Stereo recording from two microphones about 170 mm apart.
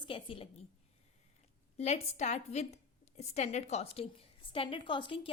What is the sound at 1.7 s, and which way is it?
A woman's voice, 40° left (ahead or behind).